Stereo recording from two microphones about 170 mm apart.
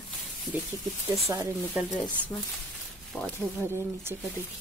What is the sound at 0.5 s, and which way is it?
Speech, 10° right (ahead or behind).